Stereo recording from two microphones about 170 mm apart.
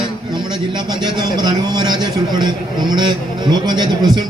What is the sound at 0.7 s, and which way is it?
A man's voice, 25° right (ahead or behind).